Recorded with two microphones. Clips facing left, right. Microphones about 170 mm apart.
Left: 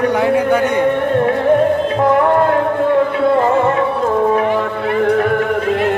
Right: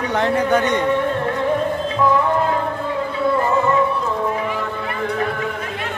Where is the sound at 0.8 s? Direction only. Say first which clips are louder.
Left 5 dB; 55° left (ahead or behind).